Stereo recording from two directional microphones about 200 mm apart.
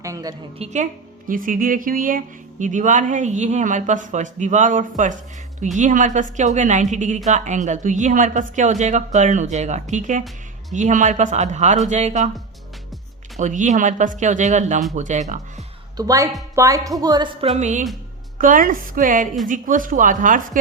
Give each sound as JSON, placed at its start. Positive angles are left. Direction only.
{"t": 0.0, "sound": "speech", "side_deg": -15}
{"t": 0.6, "sound": "speech", "side_deg": -35}
{"t": 13.4, "sound": "speech", "side_deg": -40}
{"t": 16.0, "sound": "speech", "side_deg": -15}
{"t": 17.4, "sound": "speech", "side_deg": -35}